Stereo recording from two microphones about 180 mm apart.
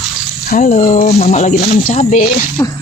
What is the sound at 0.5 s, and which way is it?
Speech, 45° left (ahead or behind).